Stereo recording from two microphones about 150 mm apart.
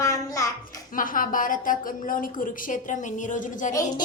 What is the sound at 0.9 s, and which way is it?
A woman's voice, 65° left (ahead or behind).